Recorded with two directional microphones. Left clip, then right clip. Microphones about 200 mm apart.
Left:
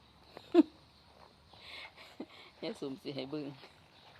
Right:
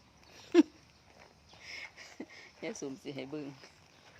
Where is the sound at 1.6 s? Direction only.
Centre (ahead or behind).